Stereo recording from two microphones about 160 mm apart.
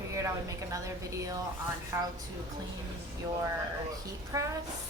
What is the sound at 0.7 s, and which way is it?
A woman's voice, 20° right (ahead or behind).